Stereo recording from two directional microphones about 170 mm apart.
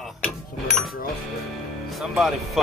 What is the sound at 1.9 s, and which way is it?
Speech, centre (ahead or behind).